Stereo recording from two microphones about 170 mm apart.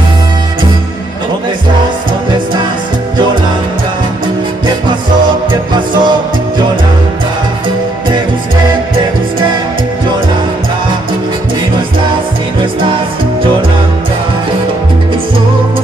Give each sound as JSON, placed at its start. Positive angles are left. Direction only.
{"t": 5.5, "sound": "music", "side_deg": -25}